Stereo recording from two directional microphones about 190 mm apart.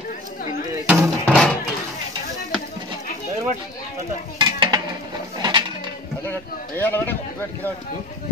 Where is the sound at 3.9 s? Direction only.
20° right (ahead or behind).